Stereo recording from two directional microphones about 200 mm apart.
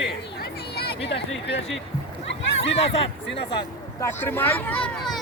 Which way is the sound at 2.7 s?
30° left (ahead or behind).